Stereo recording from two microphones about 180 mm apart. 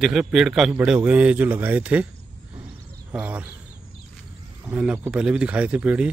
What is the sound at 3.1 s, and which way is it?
Speech, 10° right (ahead or behind).